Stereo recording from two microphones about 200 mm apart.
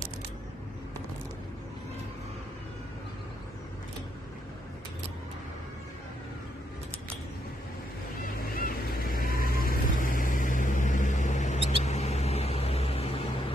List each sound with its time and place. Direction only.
8.5 s vehicle: 45° left (ahead or behind); by 13.3 s 30° left (ahead or behind)